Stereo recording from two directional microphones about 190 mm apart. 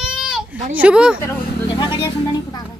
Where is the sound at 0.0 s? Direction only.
5° right (ahead or behind).